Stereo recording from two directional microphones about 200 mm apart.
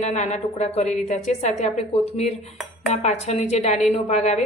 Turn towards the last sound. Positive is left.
turn(degrees=35)  # may be behind; listen again after turning